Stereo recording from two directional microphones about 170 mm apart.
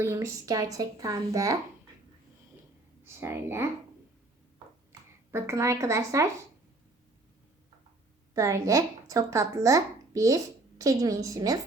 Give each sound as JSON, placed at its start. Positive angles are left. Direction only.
{"t": 0.0, "sound": "a woman's voice", "side_deg": -15}
{"t": 3.2, "sound": "speech", "side_deg": -15}
{"t": 4.9, "sound": "speech", "side_deg": -15}
{"t": 8.3, "sound": "speech", "side_deg": -20}